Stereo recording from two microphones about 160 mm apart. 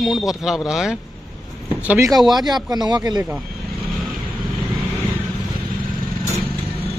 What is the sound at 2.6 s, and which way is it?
Speech, 25° right (ahead or behind).